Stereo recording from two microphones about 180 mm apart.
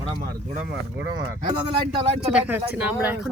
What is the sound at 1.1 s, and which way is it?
Speech, 25° right (ahead or behind).